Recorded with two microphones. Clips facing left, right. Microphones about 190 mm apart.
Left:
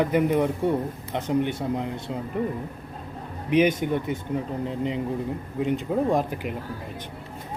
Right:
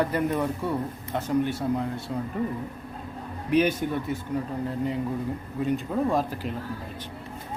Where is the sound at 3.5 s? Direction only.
15° left (ahead or behind).